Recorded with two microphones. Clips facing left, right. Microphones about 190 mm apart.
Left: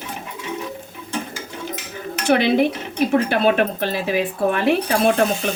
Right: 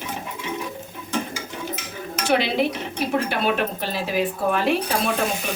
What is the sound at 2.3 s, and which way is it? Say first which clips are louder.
A woman's voice: left 5 dB; 55° left (ahead or behind).